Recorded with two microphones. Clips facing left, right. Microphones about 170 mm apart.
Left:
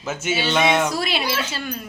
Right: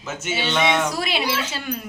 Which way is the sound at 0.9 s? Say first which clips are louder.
Even; 20° right (ahead or behind).